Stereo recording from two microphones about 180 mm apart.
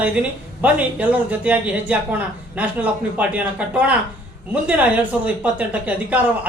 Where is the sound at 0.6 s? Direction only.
10° right (ahead or behind).